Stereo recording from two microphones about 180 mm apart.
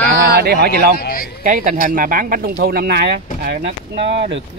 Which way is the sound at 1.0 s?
55° left (ahead or behind).